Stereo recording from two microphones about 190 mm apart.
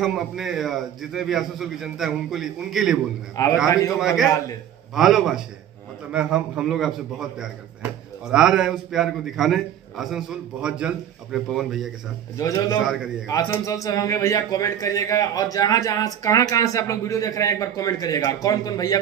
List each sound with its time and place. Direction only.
0.0 s a man's voice: centre (ahead or behind)
3.6 s a man's voice: 15° left (ahead or behind)
4.0 s a man's voice: 5° right (ahead or behind)
12.4 s a man's voice: 15° left (ahead or behind)
12.8 s a man's voice: 5° right (ahead or behind)
13.3 s a man's voice: 15° left (ahead or behind)